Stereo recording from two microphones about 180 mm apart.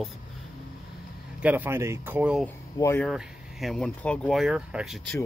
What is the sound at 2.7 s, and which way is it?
Speech, 15° left (ahead or behind).